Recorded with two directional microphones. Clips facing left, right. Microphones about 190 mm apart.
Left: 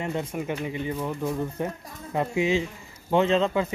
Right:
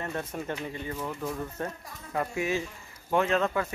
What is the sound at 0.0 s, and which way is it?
Speech, 15° left (ahead or behind).